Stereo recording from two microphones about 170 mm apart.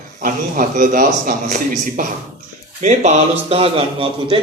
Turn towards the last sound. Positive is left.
turn(degrees=-35)  # may be behind; listen again after turning